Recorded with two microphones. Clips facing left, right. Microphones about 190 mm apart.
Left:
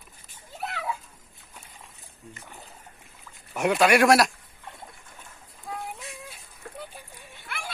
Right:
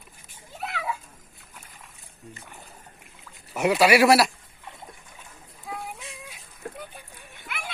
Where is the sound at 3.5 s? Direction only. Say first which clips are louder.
Right 1 dB; 5° right (ahead or behind).